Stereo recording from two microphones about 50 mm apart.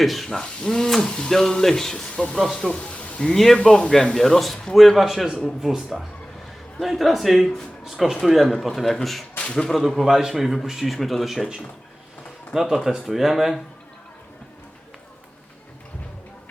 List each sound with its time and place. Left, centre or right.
0.0 s a man's voice: centre; by 3.2 s left
3.3 s speech: centre
10.0 s speech: centre
12.5 s speech: centre